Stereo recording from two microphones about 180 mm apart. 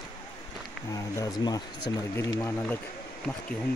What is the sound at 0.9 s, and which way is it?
Speech, 20° left (ahead or behind).